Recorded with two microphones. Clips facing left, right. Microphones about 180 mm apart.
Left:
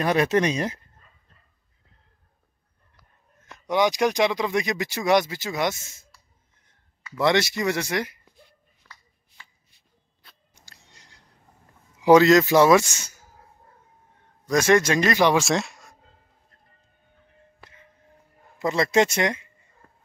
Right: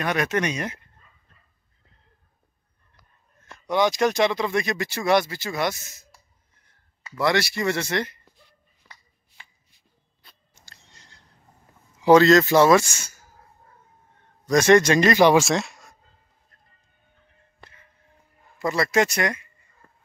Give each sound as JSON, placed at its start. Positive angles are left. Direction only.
{"t": 0.0, "sound": "speech", "side_deg": 30}
{"t": 3.4, "sound": "speech", "side_deg": 15}
{"t": 7.2, "sound": "speech", "side_deg": 20}
{"t": 8.8, "sound": "shuffle", "side_deg": -10}
{"t": 10.5, "sound": "chewing", "side_deg": 15}
{"t": 12.0, "sound": "a man's voice", "side_deg": 15}
{"t": 14.5, "sound": "a man's voice", "side_deg": 5}
{"t": 18.6, "sound": "speech", "side_deg": 20}